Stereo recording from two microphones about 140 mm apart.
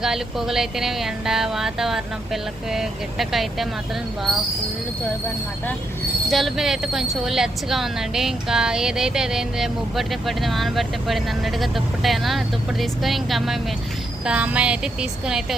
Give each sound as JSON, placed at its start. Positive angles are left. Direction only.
{"t": 0.0, "sound": "a woman's voice", "side_deg": -5}
{"t": 6.3, "sound": "a woman's voice", "side_deg": 0}